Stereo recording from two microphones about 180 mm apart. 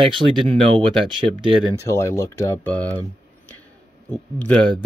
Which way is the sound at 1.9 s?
15° left (ahead or behind).